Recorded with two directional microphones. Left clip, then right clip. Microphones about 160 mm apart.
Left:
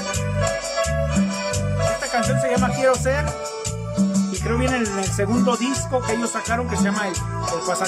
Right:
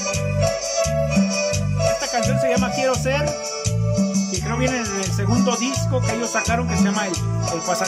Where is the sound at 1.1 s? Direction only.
20° right (ahead or behind).